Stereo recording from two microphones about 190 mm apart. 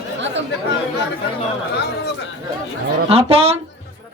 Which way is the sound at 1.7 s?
60° left (ahead or behind).